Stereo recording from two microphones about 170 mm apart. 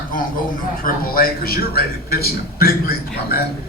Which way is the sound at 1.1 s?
60° left (ahead or behind).